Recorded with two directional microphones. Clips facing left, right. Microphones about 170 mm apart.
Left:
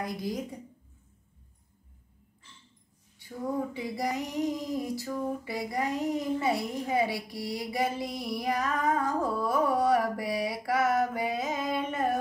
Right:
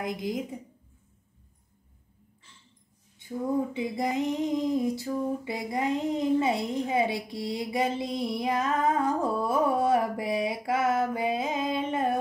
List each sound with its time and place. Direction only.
0.0 s a woman's voice: 20° right (ahead or behind)
3.2 s a woman's voice: 20° right (ahead or behind)